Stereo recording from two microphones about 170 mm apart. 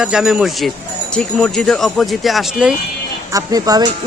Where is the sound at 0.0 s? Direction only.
5° right (ahead or behind).